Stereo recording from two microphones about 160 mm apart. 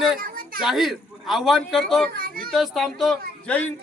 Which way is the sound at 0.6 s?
Centre (ahead or behind).